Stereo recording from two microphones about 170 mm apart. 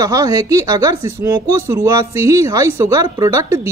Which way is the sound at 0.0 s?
20° right (ahead or behind).